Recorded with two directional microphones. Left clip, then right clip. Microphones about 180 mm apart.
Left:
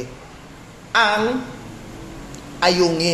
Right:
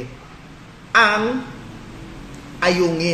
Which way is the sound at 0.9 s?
25° right (ahead or behind).